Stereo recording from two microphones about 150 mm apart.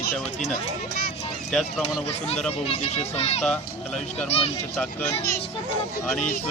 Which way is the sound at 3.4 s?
5° left (ahead or behind).